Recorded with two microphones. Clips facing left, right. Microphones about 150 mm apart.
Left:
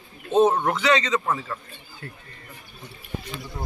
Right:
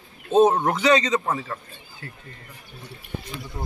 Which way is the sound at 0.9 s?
35° right (ahead or behind).